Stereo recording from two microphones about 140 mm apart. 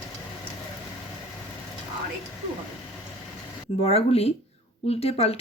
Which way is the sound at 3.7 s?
45° left (ahead or behind).